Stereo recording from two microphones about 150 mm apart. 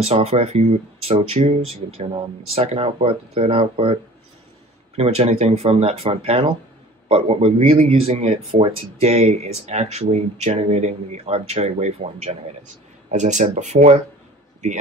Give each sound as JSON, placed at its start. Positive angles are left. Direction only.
{"t": 0.0, "sound": "speech", "side_deg": -40}